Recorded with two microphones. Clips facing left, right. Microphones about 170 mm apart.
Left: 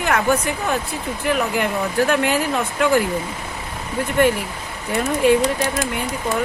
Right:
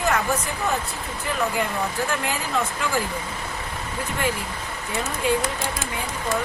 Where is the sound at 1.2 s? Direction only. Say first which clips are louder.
Left 4 dB; 75° left (ahead or behind).